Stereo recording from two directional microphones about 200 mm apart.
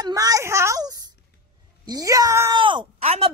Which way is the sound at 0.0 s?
15° right (ahead or behind).